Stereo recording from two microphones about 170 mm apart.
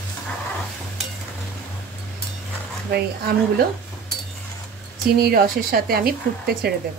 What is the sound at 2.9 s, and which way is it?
Speech, 65° right (ahead or behind).